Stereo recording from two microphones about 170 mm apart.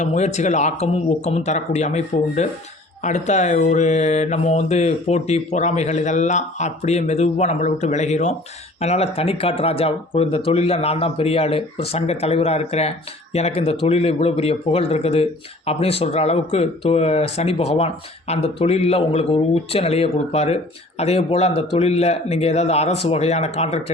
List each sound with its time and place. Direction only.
0.0 s speech: 45° left (ahead or behind)